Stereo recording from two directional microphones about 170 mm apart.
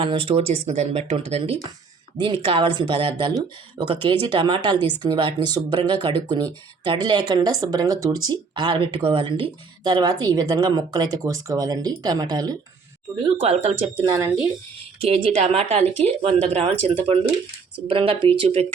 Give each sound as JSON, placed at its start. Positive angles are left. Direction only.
{"t": 0.0, "sound": "speech", "side_deg": -30}
{"t": 13.3, "sound": "speech", "side_deg": -35}
{"t": 14.0, "sound": "speech", "side_deg": -20}
{"t": 15.0, "sound": "speech", "side_deg": -35}